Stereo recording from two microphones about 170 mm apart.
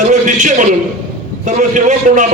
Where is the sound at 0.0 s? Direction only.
50° right (ahead or behind).